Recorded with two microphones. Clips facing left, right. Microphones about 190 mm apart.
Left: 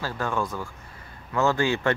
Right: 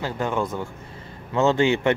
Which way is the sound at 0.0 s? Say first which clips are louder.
Right 3 dB; 20° right (ahead or behind).